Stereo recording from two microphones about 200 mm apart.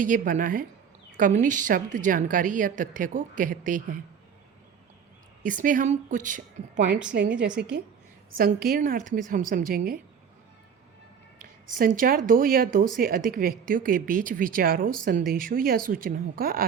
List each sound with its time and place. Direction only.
0.0 s a woman's voice: 40° right (ahead or behind)
5.4 s a woman's voice: 40° right (ahead or behind)
7.1 s a woman's voice: 60° right (ahead or behind)
7.3 s a woman's voice: 5° right (ahead or behind)
8.3 s speech: 45° right (ahead or behind)
11.7 s speech: 45° right (ahead or behind)